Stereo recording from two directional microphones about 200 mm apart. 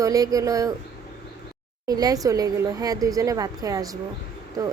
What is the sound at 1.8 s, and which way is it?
Speech, 20° right (ahead or behind).